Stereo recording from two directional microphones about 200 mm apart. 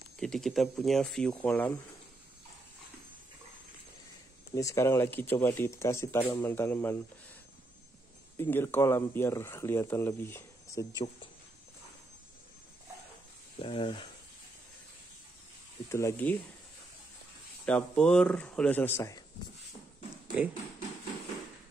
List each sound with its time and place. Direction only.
0.2 s speech: centre (ahead or behind)
4.6 s speech: 15° left (ahead or behind)
8.4 s speech: 10° left (ahead or behind)
13.6 s speech: 25° left (ahead or behind)
15.9 s speech: 15° left (ahead or behind)
17.6 s speech: 5° left (ahead or behind)